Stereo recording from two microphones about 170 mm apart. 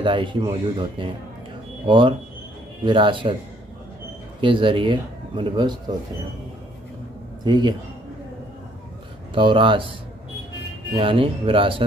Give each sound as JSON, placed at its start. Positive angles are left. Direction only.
{"t": 0.0, "sound": "speech", "side_deg": -30}
{"t": 4.4, "sound": "speech", "side_deg": -30}
{"t": 7.4, "sound": "speech", "side_deg": -25}
{"t": 9.3, "sound": "speech", "side_deg": -30}
{"t": 11.0, "sound": "speech", "side_deg": -30}